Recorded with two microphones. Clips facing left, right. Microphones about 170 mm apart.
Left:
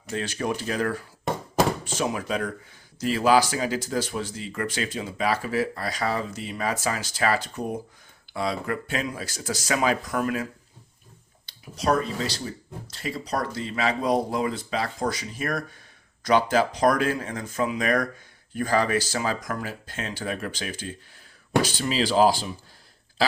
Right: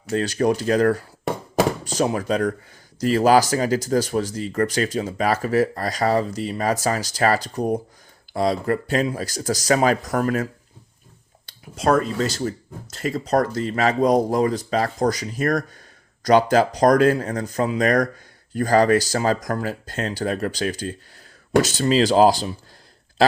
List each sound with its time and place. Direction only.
0.1 s speech: 40° right (ahead or behind)